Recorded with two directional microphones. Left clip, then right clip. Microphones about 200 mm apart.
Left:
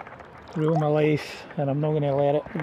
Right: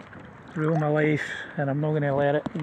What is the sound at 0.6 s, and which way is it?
Speech, 15° right (ahead or behind).